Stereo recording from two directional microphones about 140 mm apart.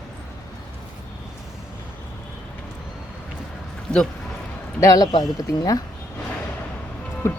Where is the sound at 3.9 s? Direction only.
5° left (ahead or behind).